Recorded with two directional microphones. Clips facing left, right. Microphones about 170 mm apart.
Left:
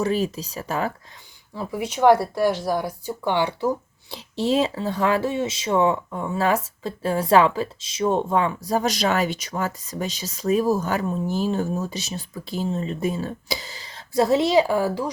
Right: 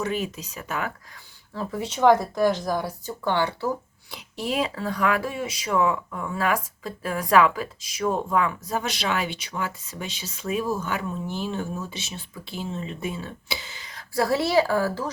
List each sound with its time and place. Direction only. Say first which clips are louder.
0.0 s speech: left 5 dB; 35° left (ahead or behind)
1.5 s speech: left 2 dB; 10° left (ahead or behind)
4.1 s speech: left 6 dB; 30° left (ahead or behind)
14.1 s speech: left 4 dB; 20° left (ahead or behind)